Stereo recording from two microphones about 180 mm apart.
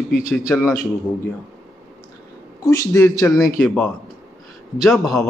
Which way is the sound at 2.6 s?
20° left (ahead or behind).